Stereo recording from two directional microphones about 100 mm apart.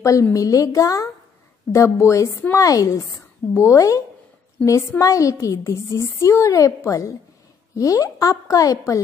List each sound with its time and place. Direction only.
0.0 s a woman's voice: 30° left (ahead or behind)